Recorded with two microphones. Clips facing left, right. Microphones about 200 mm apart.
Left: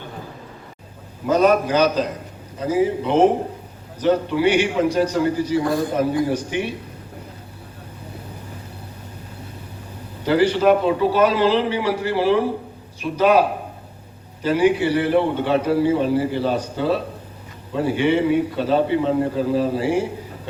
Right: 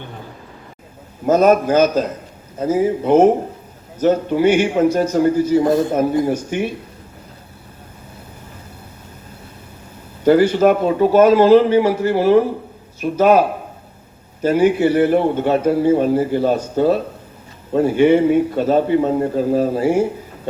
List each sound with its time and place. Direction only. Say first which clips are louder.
1.3 s a man's voice: right 4 dB; 45° right (ahead or behind)
5.6 s a man's voice: right 5 dB; 25° right (ahead or behind)
6.2 s a man's voice: right 3 dB; 45° right (ahead or behind)
10.2 s a man's voice: right 4 dB; 45° right (ahead or behind)
14.4 s a man's voice: right 3 dB; 45° right (ahead or behind)